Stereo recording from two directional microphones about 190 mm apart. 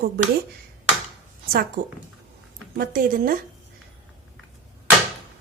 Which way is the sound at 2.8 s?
45° right (ahead or behind).